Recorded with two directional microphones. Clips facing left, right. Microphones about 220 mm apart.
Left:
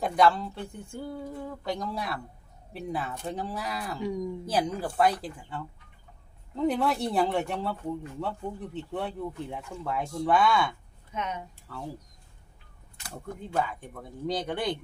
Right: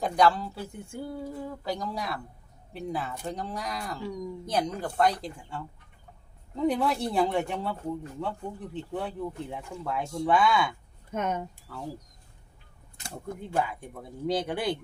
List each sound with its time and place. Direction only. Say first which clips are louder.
0.0 s speech: even; centre (ahead or behind)
11.1 s speech: right 5 dB; 50° right (ahead or behind)
11.7 s speech: left 2 dB; 5° right (ahead or behind)
13.1 s speech: right 1 dB; 10° right (ahead or behind)